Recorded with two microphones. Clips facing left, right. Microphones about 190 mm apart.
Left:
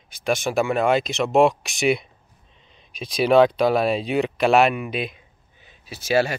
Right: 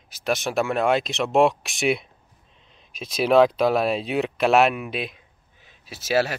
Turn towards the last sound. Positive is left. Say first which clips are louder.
# left 2 dB
turn(degrees=0)  # may be behind; listen again after turning